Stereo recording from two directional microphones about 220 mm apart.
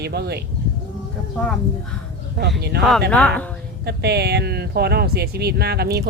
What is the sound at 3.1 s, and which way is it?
Speech, 5° left (ahead or behind).